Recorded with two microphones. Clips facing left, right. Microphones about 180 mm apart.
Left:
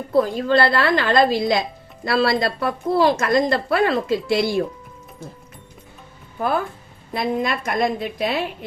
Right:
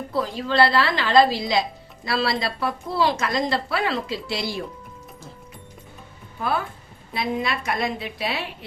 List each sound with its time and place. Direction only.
0.1 s speech: 50° left (ahead or behind)
7.1 s speech: 50° left (ahead or behind)